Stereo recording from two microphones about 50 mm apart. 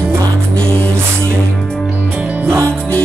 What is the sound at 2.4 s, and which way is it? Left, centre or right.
Music, right.